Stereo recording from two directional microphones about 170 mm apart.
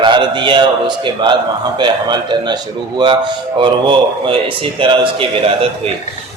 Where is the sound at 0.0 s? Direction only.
30° right (ahead or behind).